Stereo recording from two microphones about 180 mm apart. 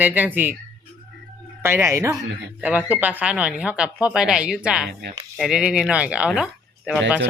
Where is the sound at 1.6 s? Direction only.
15° right (ahead or behind).